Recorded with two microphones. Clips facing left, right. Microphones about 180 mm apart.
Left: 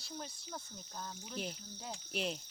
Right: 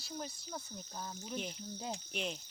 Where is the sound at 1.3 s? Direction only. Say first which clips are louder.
Right 2 dB; centre (ahead or behind).